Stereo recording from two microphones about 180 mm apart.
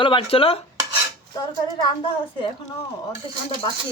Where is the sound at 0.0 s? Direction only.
30° left (ahead or behind).